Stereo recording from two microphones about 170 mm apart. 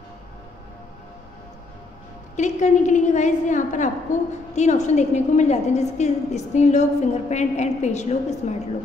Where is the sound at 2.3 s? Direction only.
45° left (ahead or behind).